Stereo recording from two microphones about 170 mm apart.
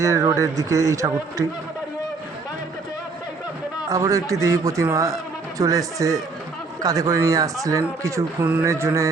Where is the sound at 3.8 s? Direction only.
20° right (ahead or behind).